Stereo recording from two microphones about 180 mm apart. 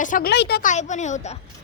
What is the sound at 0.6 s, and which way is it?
Speech, 40° left (ahead or behind).